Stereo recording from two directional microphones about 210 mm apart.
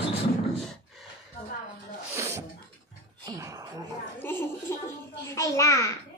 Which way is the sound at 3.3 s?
15° right (ahead or behind).